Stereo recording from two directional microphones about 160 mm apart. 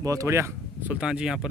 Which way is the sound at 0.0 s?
20° right (ahead or behind).